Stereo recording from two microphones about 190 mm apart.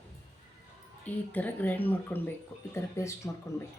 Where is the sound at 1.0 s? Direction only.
10° left (ahead or behind).